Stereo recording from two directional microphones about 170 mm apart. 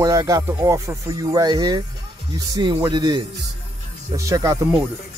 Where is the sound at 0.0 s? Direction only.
20° right (ahead or behind).